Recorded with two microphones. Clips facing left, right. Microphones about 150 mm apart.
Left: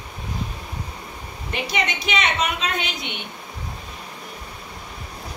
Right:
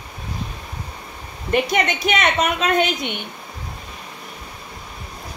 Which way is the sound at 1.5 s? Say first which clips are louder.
Right 7 dB; 50° right (ahead or behind).